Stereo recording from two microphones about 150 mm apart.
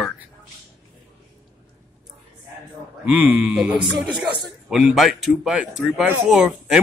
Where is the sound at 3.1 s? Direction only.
10° right (ahead or behind).